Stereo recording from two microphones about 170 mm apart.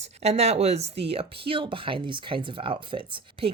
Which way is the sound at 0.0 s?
40° right (ahead or behind).